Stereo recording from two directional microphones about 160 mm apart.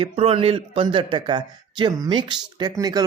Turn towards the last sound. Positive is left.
turn(degrees=-25)  # may be behind; listen again after turning